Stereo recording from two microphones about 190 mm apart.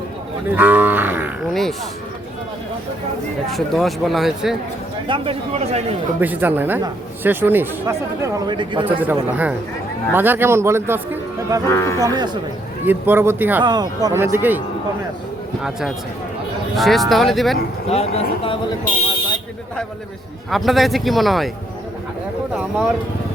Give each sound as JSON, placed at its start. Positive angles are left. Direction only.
{"t": 0.5, "sound": "livestock", "side_deg": -10}
{"t": 3.5, "sound": "speech", "side_deg": 0}
{"t": 5.0, "sound": "speech", "side_deg": -25}
{"t": 6.1, "sound": "speech", "side_deg": -10}
{"t": 9.0, "sound": "speech", "side_deg": -10}
{"t": 11.7, "sound": "speech", "side_deg": 15}
{"t": 12.0, "sound": "speech", "side_deg": -20}
{"t": 12.8, "sound": "speech", "side_deg": -10}
{"t": 13.7, "sound": "speech", "side_deg": -20}
{"t": 16.7, "sound": "speech", "side_deg": 0}
{"t": 17.8, "sound": "speech", "side_deg": 35}
{"t": 20.5, "sound": "speech", "side_deg": 0}
{"t": 22.5, "sound": "speech", "side_deg": -5}